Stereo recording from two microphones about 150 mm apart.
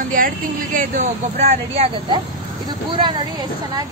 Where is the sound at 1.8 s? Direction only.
30° right (ahead or behind).